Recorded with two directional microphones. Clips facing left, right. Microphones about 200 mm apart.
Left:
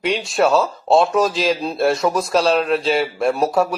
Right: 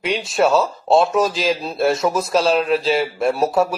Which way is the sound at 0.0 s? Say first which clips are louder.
Even; centre (ahead or behind).